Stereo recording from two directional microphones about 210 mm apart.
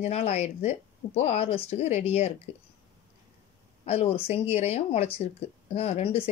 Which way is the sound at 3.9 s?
30° left (ahead or behind).